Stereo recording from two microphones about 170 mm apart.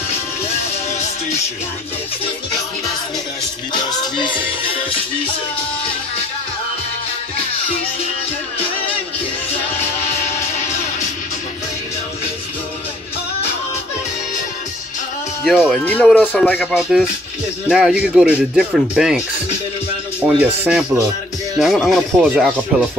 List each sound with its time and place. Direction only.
4.2 s music: 30° left (ahead or behind)
15.4 s speech: centre (ahead or behind)
20.3 s speech: 5° right (ahead or behind)